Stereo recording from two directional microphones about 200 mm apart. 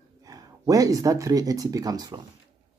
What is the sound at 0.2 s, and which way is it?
Speech, 15° right (ahead or behind).